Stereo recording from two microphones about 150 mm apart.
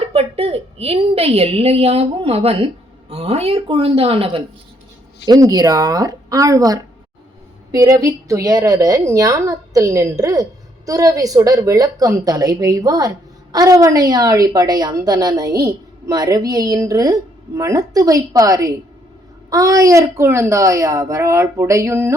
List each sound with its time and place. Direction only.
0.1 s a woman's voice: 40° right (ahead or behind)
5.2 s a woman's voice: 25° right (ahead or behind)